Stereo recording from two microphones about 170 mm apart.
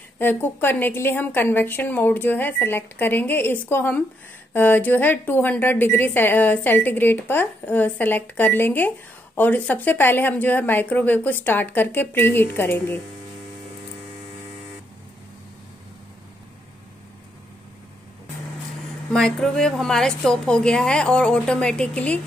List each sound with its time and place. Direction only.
0.2 s a woman's voice: 10° left (ahead or behind)
19.1 s a woman's voice: centre (ahead or behind)